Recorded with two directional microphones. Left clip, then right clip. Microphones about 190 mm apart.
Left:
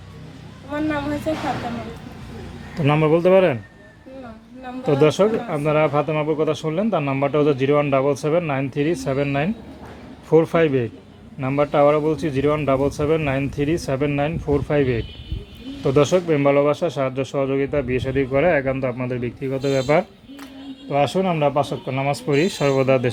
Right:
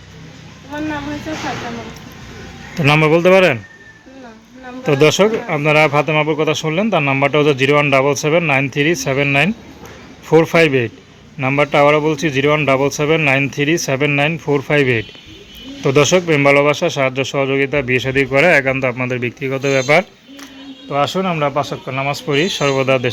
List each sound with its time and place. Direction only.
2.7 s speech: 10° right (ahead or behind)
4.9 s speech: 20° right (ahead or behind)
20.9 s speech: 15° left (ahead or behind)